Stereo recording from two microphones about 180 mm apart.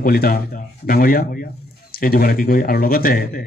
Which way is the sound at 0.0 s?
55° left (ahead or behind).